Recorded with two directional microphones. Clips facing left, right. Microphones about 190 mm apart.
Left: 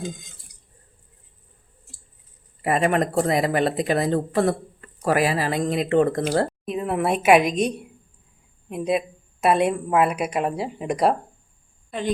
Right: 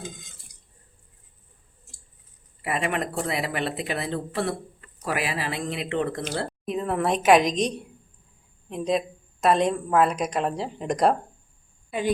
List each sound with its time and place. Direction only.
2.6 s speech: 40° left (ahead or behind)
6.7 s a woman's voice: 10° left (ahead or behind)
8.7 s a woman's voice: 10° left (ahead or behind)
11.9 s a woman's voice: 10° right (ahead or behind)